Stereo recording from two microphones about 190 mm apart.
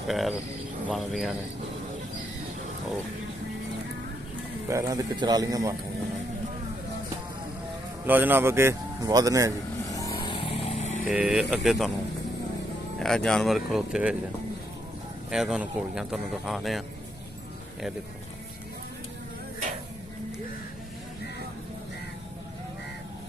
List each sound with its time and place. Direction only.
0.8 s speech: centre (ahead or behind)
4.6 s a man's voice: 15° right (ahead or behind)
8.0 s a man's voice: 10° right (ahead or behind)
9.8 s vehicle: 15° left (ahead or behind); by 11.1 s 40° left (ahead or behind)
11.1 s speech: 5° right (ahead or behind)
13.0 s speech: 5° left (ahead or behind)
15.3 s speech: 5° right (ahead or behind)